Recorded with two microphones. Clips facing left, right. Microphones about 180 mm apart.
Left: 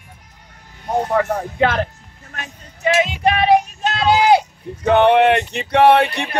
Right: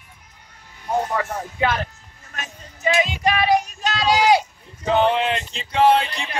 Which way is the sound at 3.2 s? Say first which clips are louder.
Left 5 dB; 55° left (ahead or behind).